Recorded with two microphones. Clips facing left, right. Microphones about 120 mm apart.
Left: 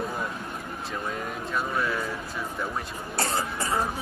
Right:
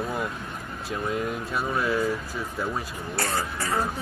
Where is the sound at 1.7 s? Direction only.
25° right (ahead or behind).